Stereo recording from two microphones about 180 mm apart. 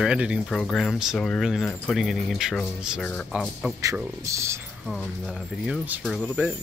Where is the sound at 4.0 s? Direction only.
15° right (ahead or behind).